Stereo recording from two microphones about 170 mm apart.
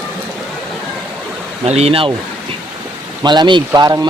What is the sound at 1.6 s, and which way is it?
Speech, 35° right (ahead or behind).